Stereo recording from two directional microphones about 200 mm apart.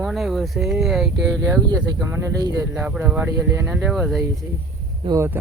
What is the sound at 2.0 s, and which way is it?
Speech, 15° right (ahead or behind).